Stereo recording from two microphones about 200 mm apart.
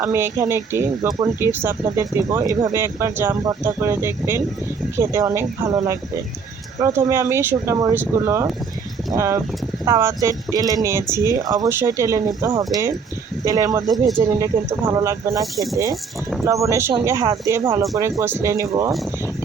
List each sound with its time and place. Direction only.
0.0 s speech: 10° right (ahead or behind)